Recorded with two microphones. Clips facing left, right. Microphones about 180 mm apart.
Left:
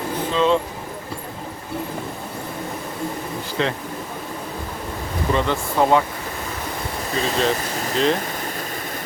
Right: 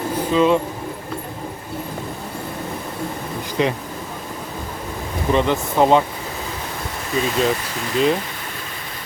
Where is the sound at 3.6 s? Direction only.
15° right (ahead or behind).